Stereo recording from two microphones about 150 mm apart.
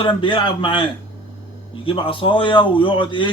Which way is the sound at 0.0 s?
35° left (ahead or behind).